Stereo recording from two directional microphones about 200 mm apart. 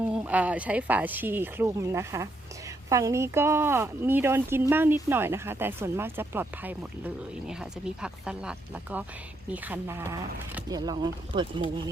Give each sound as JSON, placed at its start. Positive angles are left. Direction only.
{"t": 0.1, "sound": "speech", "side_deg": -5}